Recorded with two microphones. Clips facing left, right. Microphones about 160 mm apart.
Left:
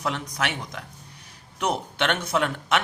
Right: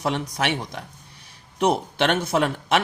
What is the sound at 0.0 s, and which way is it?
Speech, 30° right (ahead or behind).